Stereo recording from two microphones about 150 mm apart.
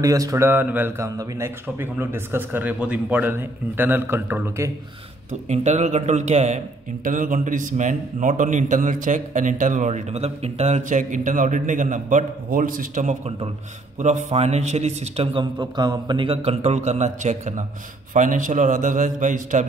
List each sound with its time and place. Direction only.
0.0 s a man's voice: 25° right (ahead or behind)
5.5 s a man's voice: 50° right (ahead or behind)
7.1 s a man's voice: 60° right (ahead or behind); by 15.4 s 45° right (ahead or behind)
15.6 s a man's voice: 30° right (ahead or behind); by 19.6 s 60° right (ahead or behind)